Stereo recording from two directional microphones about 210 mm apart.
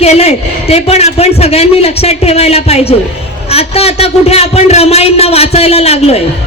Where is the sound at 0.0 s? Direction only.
30° left (ahead or behind).